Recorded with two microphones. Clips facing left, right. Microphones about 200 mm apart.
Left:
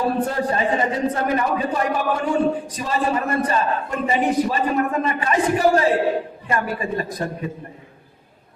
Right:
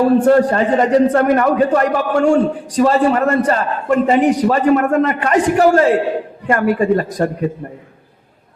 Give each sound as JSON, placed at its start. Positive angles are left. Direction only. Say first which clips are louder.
{"t": 0.2, "sound": "a man's voice", "louder": "right 10 dB", "side_deg": -70}
{"t": 6.5, "sound": "a man's voice", "louder": "right 10 dB", "side_deg": -55}